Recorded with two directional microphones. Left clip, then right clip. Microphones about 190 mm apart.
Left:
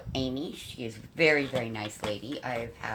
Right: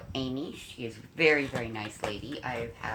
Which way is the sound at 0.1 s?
40° left (ahead or behind).